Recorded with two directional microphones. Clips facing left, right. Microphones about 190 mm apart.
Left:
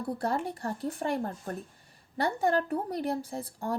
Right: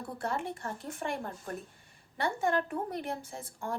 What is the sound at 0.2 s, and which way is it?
A woman's voice, 35° left (ahead or behind).